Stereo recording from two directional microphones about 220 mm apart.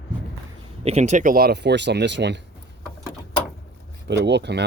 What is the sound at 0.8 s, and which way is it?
Speech, 30° right (ahead or behind).